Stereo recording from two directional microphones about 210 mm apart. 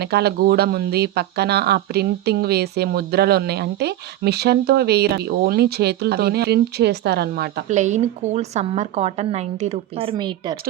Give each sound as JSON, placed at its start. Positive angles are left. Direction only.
{"t": 0.0, "sound": "speech", "side_deg": -50}
{"t": 7.7, "sound": "a woman's voice", "side_deg": -35}